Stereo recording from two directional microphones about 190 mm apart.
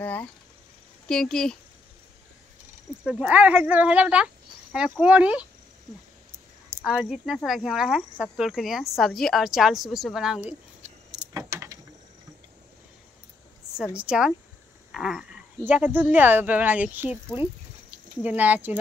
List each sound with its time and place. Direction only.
0.0 s speech: 10° left (ahead or behind)
3.0 s speech: 5° right (ahead or behind)
6.9 s speech: centre (ahead or behind)
11.1 s vehicle: 15° right (ahead or behind)
13.9 s speech: 5° right (ahead or behind)
18.2 s speech: 10° right (ahead or behind)